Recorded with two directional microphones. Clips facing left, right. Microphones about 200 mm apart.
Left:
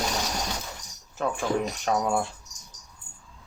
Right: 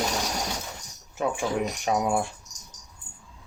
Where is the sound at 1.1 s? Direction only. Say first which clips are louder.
Even; 10° right (ahead or behind).